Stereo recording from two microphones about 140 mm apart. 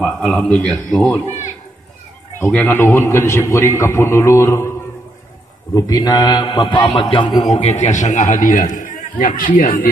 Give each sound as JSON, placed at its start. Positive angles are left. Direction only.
{"t": 0.0, "sound": "speech", "side_deg": 5}
{"t": 2.4, "sound": "a man's voice", "side_deg": 15}
{"t": 5.8, "sound": "a man's voice", "side_deg": 25}
{"t": 7.5, "sound": "a man's voice", "side_deg": 50}